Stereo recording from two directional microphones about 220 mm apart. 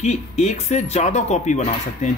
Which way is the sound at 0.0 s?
30° left (ahead or behind).